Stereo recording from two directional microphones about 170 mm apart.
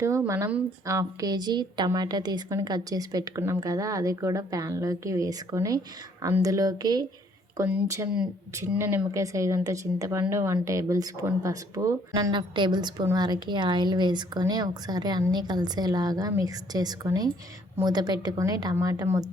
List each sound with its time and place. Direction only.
0.0 s speech: 15° right (ahead or behind)